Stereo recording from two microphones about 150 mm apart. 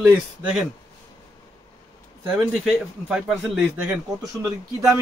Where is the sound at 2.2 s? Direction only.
10° right (ahead or behind).